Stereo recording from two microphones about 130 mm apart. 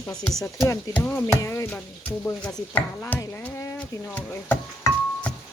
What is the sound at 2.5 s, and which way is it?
Stir, 5° left (ahead or behind).